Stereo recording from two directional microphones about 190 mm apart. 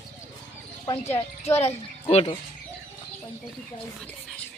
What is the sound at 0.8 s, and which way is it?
Speech, 30° left (ahead or behind).